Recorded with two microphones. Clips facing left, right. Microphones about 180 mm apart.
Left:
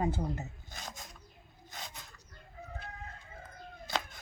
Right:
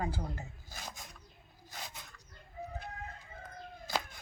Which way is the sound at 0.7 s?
Centre (ahead or behind).